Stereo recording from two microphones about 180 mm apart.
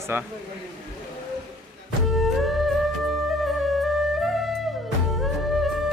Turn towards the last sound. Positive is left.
turn(degrees=0)  # may be behind; listen again after turning